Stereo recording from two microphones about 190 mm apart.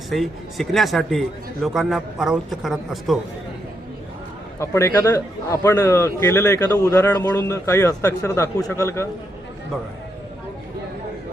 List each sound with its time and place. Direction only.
0.1 s a man's voice: centre (ahead or behind)
4.6 s a man's voice: 15° left (ahead or behind)